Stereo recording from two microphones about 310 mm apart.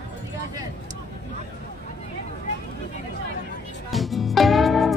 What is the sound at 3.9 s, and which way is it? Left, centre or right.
Music, centre.